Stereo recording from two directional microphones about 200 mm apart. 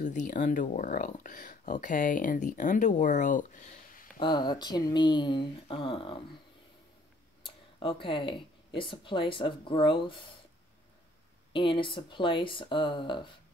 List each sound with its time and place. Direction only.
0.0 s speech: 40° left (ahead or behind)
4.2 s speech: 20° left (ahead or behind)
7.4 s speech: 25° left (ahead or behind)
11.5 s speech: 25° left (ahead or behind)